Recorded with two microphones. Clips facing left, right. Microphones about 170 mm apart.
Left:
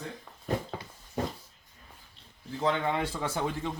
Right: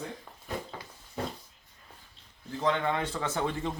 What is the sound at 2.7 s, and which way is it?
A man's voice, 10° left (ahead or behind).